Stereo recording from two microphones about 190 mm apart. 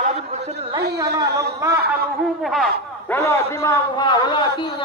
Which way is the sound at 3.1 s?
15° left (ahead or behind).